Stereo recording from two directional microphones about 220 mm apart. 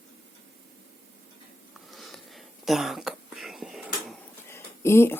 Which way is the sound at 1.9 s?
Centre (ahead or behind).